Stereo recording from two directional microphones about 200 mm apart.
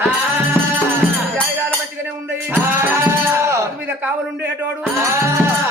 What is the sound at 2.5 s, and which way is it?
Music, 10° right (ahead or behind).